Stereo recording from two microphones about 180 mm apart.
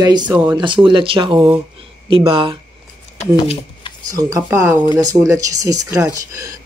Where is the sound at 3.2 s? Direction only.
35° left (ahead or behind).